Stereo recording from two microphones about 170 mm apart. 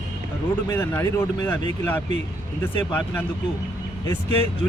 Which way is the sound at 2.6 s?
10° left (ahead or behind).